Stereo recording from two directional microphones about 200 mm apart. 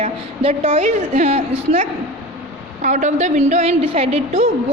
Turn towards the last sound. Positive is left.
turn(degrees=-30)  # may be behind; listen again after turning